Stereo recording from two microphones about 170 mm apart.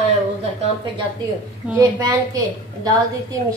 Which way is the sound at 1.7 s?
25° right (ahead or behind).